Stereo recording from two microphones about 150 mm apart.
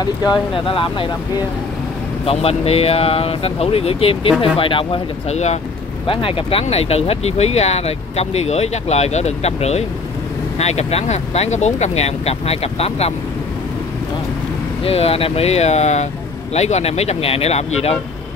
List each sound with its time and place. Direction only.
0.0 s speech: 30° left (ahead or behind)
14.8 s speech: 40° left (ahead or behind)